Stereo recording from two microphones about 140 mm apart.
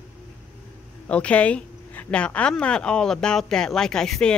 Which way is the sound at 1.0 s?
10° left (ahead or behind).